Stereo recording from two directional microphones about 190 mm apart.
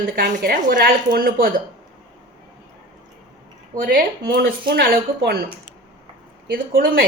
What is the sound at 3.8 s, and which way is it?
A woman's voice, 45° right (ahead or behind).